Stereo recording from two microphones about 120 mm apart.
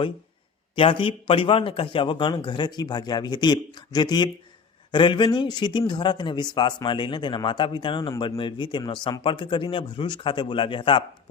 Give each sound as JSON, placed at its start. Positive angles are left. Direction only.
{"t": 0.8, "sound": "a man's voice", "side_deg": 45}